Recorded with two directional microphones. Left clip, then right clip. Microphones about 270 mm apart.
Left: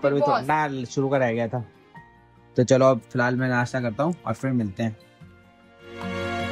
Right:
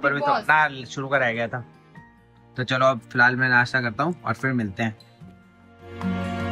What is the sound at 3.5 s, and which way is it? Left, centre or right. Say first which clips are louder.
Speech: right 6 dB; left.